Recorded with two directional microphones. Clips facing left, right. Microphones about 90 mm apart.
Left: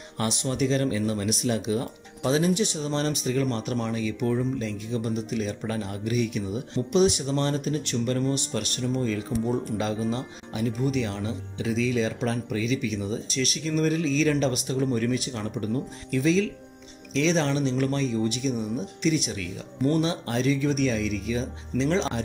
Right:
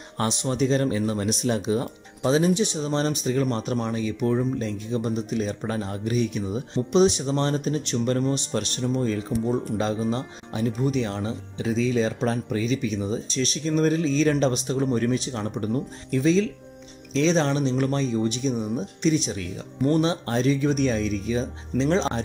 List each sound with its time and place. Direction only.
0.2 s speech: 25° right (ahead or behind)